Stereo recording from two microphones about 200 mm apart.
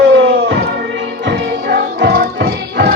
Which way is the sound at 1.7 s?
55° right (ahead or behind).